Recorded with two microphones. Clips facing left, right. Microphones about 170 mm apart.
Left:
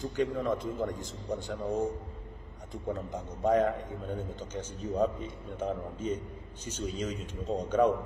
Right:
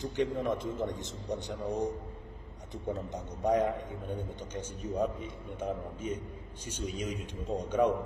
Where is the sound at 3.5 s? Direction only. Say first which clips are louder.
Left 2 dB; 20° right (ahead or behind).